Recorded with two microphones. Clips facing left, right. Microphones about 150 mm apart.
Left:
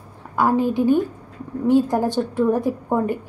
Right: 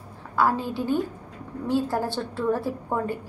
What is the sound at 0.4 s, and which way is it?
A woman's voice, 15° left (ahead or behind).